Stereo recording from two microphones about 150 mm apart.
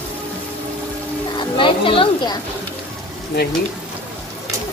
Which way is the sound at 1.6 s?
35° left (ahead or behind).